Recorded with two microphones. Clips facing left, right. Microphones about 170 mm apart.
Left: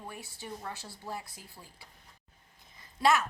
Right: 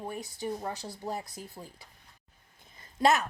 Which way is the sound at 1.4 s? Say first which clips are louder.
Right 7 dB; 20° right (ahead or behind).